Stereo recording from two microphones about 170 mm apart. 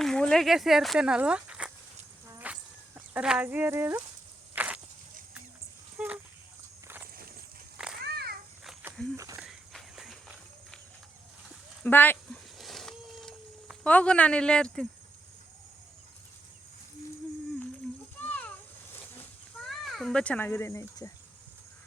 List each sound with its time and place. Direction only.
0.0 s speech: 5° left (ahead or behind)
2.4 s a sound: 10° right (ahead or behind)
6.0 s speech: 10° right (ahead or behind)
7.9 s children playing: 70° right (ahead or behind)
9.1 s walk: 20° right (ahead or behind)
9.4 s walk: centre (ahead or behind)
11.9 s speech: 10° left (ahead or behind)
12.5 s a sound: centre (ahead or behind)
18.3 s a sound: 10° left (ahead or behind)
19.6 s speech: centre (ahead or behind); by 21.1 s 20° left (ahead or behind)